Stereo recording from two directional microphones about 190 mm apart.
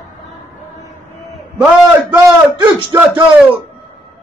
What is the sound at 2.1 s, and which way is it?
A man's voice, 20° right (ahead or behind).